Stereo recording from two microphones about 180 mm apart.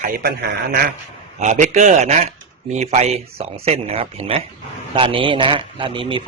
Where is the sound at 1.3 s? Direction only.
40° right (ahead or behind).